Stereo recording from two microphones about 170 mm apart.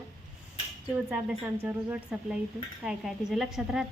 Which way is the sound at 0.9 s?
10° right (ahead or behind).